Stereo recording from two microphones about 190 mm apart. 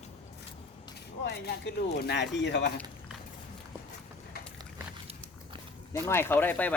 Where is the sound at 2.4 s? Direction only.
70° left (ahead or behind).